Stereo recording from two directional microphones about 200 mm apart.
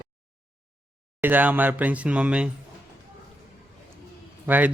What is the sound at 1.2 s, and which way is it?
Speech, 10° right (ahead or behind).